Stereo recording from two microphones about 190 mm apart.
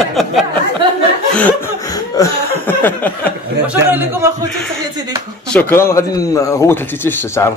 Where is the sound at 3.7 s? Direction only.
10° right (ahead or behind).